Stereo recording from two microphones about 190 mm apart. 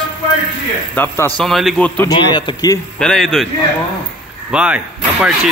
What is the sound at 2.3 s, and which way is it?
Speech, 20° left (ahead or behind).